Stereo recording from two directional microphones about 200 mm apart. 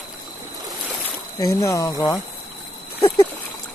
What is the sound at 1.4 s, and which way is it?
Speech, 15° left (ahead or behind).